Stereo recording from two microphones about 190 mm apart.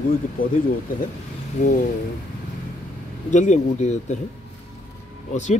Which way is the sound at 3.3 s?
40° left (ahead or behind).